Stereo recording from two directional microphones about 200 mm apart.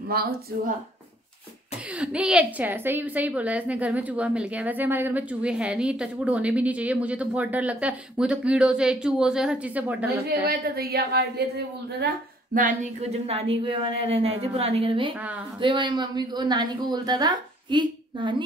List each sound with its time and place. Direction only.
2.0 s a woman's voice: 5° right (ahead or behind)
10.4 s a woman's voice: 50° right (ahead or behind)
12.5 s speech: 40° right (ahead or behind)